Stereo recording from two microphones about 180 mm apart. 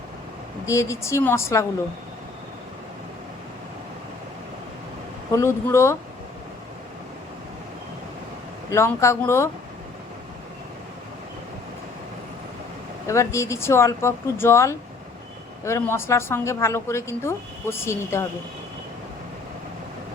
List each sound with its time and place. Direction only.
0.6 s a woman's voice: 15° left (ahead or behind)
5.3 s a woman's voice: 15° left (ahead or behind)
8.7 s a woman's voice: 15° left (ahead or behind)
13.1 s a woman's voice: 15° left (ahead or behind)